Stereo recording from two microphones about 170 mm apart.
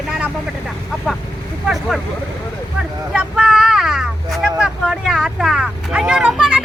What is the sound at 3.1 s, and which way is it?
Vehicle, 5° right (ahead or behind).